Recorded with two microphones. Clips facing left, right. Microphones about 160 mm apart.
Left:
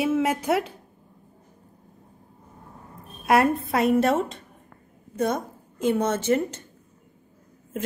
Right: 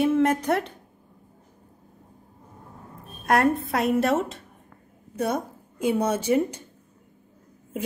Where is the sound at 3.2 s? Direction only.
Centre (ahead or behind).